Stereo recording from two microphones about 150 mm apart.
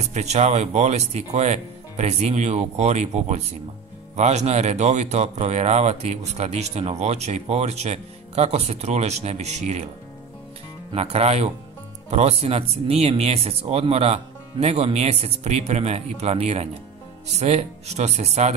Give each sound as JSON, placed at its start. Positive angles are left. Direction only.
{"t": 0.0, "sound": "speech", "side_deg": -50}
{"t": 10.9, "sound": "speech", "side_deg": -45}